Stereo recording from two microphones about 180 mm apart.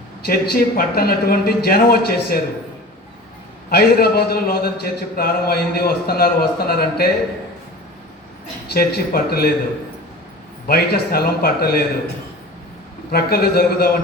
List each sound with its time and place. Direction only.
0.3 s a man's voice: 55° left (ahead or behind)
3.7 s a man's voice: 60° left (ahead or behind)
8.7 s a man's voice: 60° left (ahead or behind)
10.7 s a man's voice: 60° left (ahead or behind)
13.1 s a man's voice: 60° left (ahead or behind)